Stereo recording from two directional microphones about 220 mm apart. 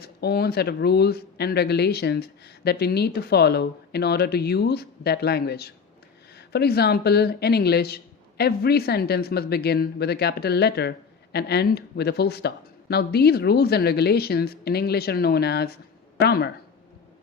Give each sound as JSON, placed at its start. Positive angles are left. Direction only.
{"t": 0.0, "sound": "speech", "side_deg": 45}